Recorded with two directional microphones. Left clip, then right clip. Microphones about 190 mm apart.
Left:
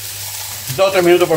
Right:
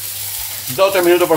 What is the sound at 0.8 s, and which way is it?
Speech, 30° right (ahead or behind).